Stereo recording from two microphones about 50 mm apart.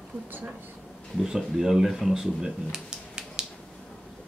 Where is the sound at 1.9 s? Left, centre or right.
Centre.